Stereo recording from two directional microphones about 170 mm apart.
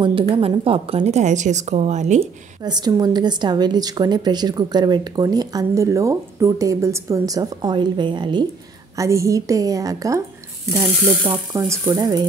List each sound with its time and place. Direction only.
0.0 s a woman's voice: 30° right (ahead or behind)
2.6 s a woman's voice: 25° right (ahead or behind)
11.2 s a woman's voice: 15° right (ahead or behind)